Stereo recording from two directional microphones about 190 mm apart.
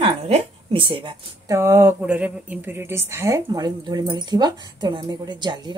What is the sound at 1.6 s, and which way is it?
Speech, 15° right (ahead or behind).